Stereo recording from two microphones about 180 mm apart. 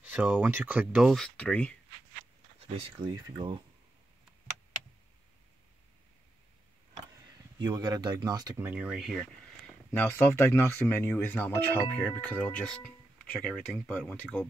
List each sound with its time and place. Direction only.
0.0 s speech: 10° right (ahead or behind); by 1.8 s 5° left (ahead or behind)
2.7 s speech: 25° right (ahead or behind)
7.5 s speech: 25° right (ahead or behind)
8.6 s speech: 5° right (ahead or behind)